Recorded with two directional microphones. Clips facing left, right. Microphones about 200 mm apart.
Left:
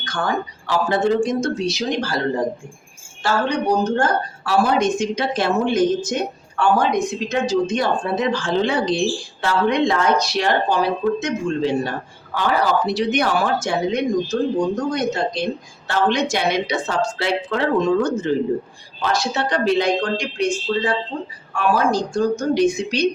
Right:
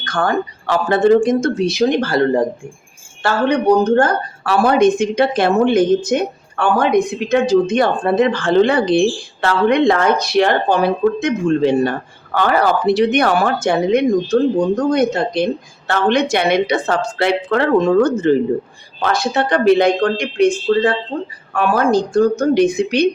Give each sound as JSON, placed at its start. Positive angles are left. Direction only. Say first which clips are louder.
{"t": 0.0, "sound": "speech", "louder": "right 5 dB", "side_deg": -55}